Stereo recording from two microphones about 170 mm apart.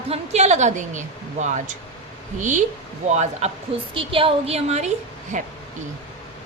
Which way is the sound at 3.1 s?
40° right (ahead or behind).